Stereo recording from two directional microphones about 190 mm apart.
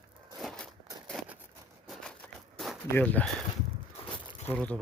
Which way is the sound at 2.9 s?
10° left (ahead or behind).